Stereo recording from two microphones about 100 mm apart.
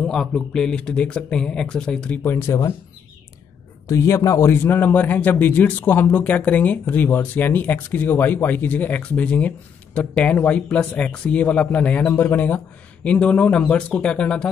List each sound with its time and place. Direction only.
0.0 s a man's voice: 5° left (ahead or behind)
2.2 s a man's voice: 30° left (ahead or behind)
3.8 s a man's voice: 30° left (ahead or behind); by 14.5 s 10° left (ahead or behind)